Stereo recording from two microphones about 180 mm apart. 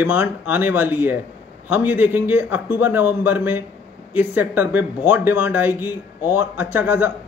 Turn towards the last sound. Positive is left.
turn(degrees=-10)  # may be behind; listen again after turning